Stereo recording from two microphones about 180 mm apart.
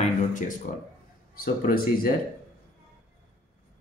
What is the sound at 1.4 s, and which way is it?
Speech, 55° left (ahead or behind).